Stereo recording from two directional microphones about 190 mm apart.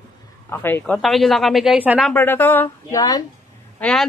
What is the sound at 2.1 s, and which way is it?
A woman's voice, 10° left (ahead or behind).